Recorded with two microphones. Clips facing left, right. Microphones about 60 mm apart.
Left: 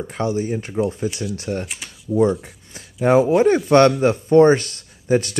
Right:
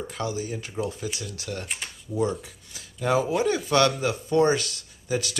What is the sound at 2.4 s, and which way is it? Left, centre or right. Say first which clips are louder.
Speech: left 4 dB; left.